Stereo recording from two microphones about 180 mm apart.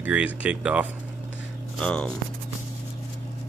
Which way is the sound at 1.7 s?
5° left (ahead or behind).